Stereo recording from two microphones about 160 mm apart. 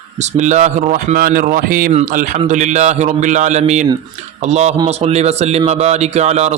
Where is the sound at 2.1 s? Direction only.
50° right (ahead or behind).